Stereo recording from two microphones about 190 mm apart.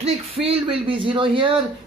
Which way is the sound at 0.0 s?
30° right (ahead or behind).